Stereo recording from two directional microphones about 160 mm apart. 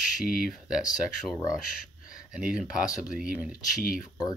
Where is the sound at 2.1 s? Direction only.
5° right (ahead or behind).